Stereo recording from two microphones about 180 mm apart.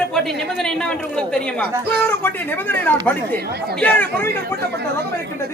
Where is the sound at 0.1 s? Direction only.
Centre (ahead or behind).